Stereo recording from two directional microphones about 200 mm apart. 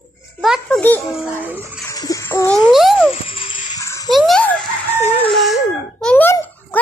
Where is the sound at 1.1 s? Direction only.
10° right (ahead or behind).